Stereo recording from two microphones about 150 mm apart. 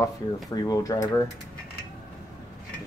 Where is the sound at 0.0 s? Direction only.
25° left (ahead or behind).